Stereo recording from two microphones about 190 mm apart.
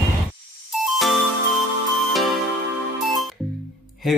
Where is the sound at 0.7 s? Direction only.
Centre (ahead or behind).